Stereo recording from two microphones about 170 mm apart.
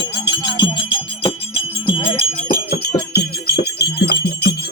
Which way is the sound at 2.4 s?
55° left (ahead or behind).